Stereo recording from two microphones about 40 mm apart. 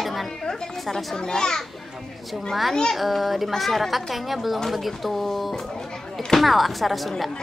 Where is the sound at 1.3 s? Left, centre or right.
Centre.